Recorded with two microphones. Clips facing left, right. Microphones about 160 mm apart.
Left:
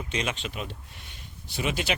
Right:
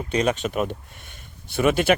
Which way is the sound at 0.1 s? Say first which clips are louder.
Right 11 dB; 40° right (ahead or behind).